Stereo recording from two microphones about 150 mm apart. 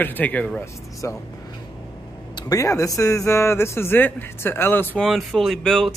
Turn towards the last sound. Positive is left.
turn(degrees=5)  # may be behind; listen again after turning